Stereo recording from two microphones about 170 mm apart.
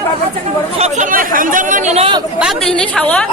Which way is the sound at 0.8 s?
50° right (ahead or behind).